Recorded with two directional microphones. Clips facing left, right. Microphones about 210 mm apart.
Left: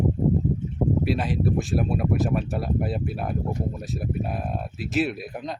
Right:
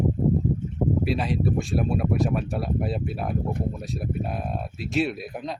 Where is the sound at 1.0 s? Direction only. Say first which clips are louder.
Even; centre (ahead or behind).